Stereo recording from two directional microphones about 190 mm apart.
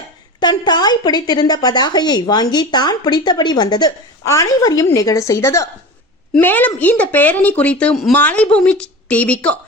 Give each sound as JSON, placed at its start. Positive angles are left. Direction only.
{"t": 0.3, "sound": "speech", "side_deg": 25}